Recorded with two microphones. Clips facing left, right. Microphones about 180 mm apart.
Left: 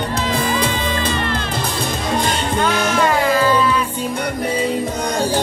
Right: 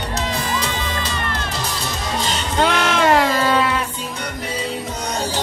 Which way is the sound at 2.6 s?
85° right.